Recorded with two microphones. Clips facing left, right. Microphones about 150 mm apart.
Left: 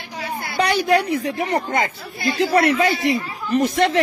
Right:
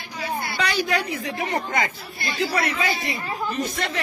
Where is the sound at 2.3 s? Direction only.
45° left (ahead or behind).